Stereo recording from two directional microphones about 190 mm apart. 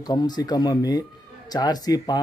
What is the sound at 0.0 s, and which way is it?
Speech, 20° left (ahead or behind).